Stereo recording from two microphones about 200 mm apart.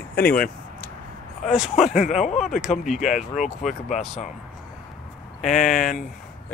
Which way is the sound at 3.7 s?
35° left (ahead or behind).